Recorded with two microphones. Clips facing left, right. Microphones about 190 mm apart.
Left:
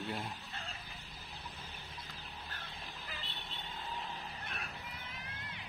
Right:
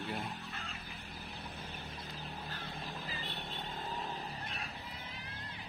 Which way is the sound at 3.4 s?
50° right (ahead or behind).